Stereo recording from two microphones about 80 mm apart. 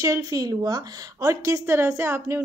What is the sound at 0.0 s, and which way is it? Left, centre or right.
A woman's voice, right.